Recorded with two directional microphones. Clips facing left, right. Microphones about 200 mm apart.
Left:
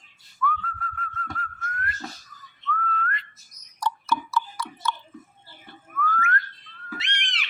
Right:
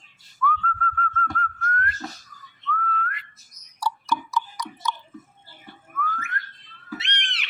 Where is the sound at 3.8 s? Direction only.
15° right (ahead or behind).